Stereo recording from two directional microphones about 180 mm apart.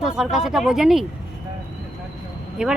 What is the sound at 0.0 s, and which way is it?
Speech, centre (ahead or behind).